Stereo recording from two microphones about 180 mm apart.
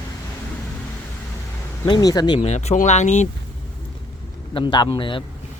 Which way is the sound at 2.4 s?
40° left (ahead or behind).